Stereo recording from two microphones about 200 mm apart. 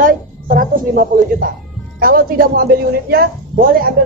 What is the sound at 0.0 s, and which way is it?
A woman's voice, 45° right (ahead or behind).